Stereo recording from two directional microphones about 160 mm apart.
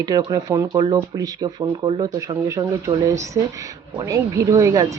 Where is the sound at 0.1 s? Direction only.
25° right (ahead or behind).